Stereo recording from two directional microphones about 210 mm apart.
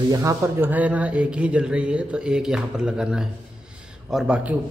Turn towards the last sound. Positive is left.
turn(degrees=-5)  # may be behind; listen again after turning